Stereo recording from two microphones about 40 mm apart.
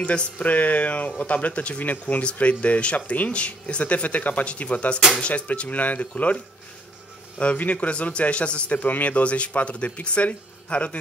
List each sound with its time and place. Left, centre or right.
0.4 s speech: left
1.8 s speech: left
5.3 s speech: left
7.3 s speech: left
8.8 s speech: left